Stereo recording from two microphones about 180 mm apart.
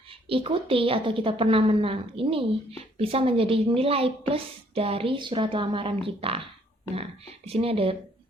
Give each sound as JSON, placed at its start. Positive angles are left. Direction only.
{"t": 0.1, "sound": "a woman's voice", "side_deg": -30}